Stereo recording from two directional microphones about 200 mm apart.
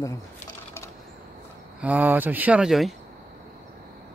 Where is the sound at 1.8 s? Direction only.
10° right (ahead or behind).